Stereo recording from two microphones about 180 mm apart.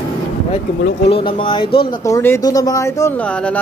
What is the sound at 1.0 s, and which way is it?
Speech, 30° left (ahead or behind).